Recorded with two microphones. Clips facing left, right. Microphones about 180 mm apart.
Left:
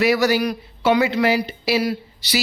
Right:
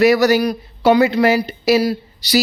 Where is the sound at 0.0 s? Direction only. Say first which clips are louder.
Right 5 dB; 45° right (ahead or behind).